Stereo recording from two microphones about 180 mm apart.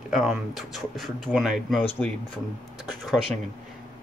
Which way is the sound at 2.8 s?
Centre (ahead or behind).